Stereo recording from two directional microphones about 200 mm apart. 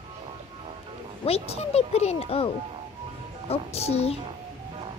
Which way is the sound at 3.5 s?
30° left (ahead or behind).